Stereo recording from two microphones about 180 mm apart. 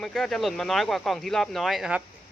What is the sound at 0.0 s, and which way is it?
Speech, centre (ahead or behind).